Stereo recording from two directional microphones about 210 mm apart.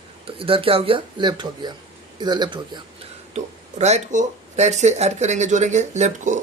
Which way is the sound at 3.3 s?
30° right (ahead or behind).